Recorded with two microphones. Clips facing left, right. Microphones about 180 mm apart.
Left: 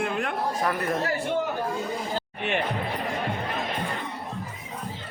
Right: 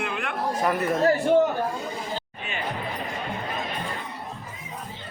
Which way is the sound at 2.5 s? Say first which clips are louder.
Left 9 dB; 65° left (ahead or behind).